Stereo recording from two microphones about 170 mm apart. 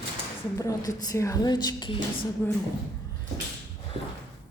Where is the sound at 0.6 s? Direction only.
20° left (ahead or behind).